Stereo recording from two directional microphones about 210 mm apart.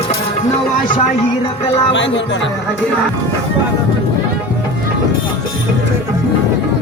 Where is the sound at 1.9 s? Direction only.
60° left (ahead or behind).